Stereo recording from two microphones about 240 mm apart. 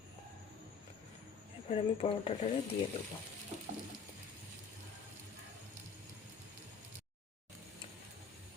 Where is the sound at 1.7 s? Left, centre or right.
Left.